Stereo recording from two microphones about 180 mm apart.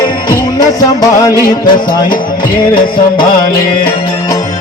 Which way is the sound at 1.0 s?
20° left (ahead or behind).